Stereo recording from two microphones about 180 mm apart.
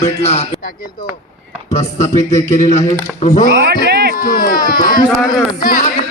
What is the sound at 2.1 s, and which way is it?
Speech, 15° left (ahead or behind).